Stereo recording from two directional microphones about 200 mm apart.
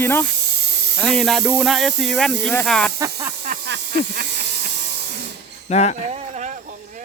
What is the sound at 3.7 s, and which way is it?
Snake, 55° right (ahead or behind).